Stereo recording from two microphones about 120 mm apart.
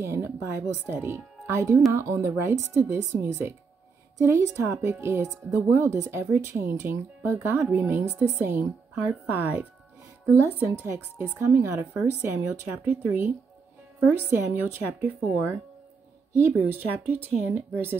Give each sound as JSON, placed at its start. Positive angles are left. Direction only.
{"t": 0.0, "sound": "a woman's voice", "side_deg": -20}